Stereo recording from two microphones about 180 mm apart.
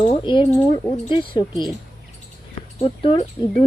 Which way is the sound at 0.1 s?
25° left (ahead or behind).